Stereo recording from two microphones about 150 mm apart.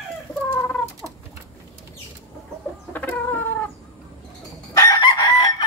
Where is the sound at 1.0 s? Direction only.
Centre (ahead or behind).